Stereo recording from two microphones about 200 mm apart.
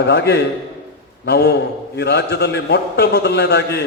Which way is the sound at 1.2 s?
55° left (ahead or behind).